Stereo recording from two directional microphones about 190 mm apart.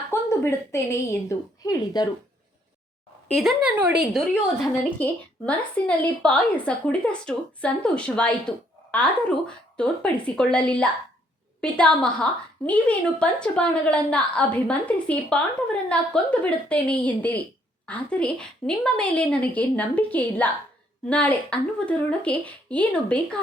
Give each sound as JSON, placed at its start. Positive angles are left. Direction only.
{"t": 0.1, "sound": "a woman's voice", "side_deg": 15}
{"t": 3.2, "sound": "a woman's voice", "side_deg": 0}